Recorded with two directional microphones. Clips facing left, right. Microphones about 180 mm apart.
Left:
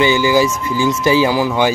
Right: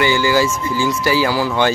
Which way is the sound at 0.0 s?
20° left (ahead or behind).